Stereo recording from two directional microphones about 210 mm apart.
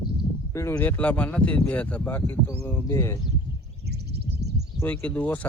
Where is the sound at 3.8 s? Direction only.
50° right (ahead or behind).